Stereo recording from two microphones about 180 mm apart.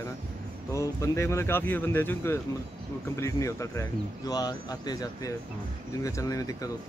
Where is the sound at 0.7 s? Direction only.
15° left (ahead or behind).